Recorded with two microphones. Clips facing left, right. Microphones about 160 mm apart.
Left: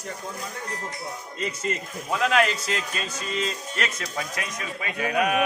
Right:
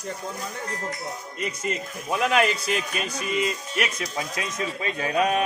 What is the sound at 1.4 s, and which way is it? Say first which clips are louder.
A man's voice: left 1 dB; 15° right (ahead or behind).